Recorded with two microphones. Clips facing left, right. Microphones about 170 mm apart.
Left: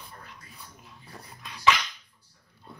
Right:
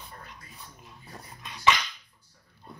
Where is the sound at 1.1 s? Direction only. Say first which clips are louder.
Even; centre (ahead or behind).